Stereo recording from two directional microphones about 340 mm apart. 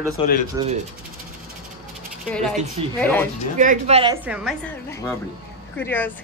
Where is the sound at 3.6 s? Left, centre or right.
Right; by 4.5 s centre.